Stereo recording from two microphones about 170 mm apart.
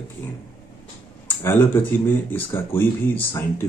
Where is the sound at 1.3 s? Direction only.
15° left (ahead or behind).